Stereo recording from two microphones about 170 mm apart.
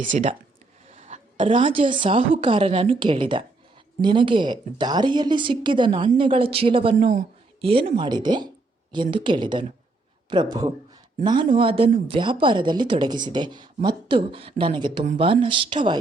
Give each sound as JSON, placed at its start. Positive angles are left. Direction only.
{"t": 0.1, "sound": "a woman's voice", "side_deg": -45}